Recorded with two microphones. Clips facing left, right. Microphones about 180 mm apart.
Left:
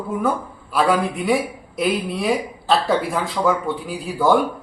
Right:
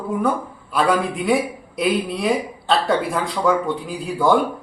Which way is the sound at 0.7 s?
Centre (ahead or behind).